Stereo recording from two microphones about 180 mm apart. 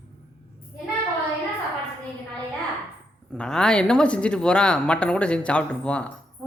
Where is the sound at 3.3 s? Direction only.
5° left (ahead or behind).